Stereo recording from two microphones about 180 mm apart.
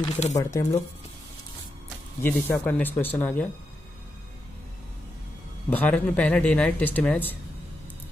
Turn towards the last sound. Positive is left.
turn(degrees=10)  # may be behind; listen again after turning